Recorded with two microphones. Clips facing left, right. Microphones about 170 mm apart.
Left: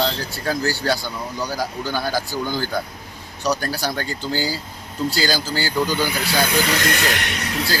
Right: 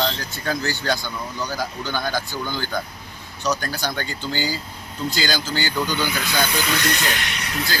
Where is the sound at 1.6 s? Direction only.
10° left (ahead or behind).